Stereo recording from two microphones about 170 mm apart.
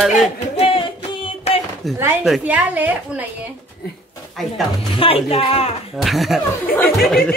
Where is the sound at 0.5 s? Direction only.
35° left (ahead or behind).